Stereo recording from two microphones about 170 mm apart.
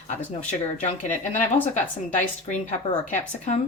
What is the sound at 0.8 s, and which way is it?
Speech, 45° left (ahead or behind).